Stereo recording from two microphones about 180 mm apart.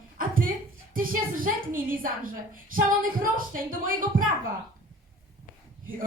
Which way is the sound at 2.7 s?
50° right (ahead or behind).